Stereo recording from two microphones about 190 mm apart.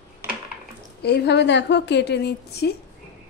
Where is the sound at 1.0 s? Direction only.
60° left (ahead or behind).